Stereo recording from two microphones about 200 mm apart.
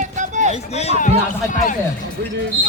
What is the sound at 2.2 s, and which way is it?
Speech, 60° right (ahead or behind).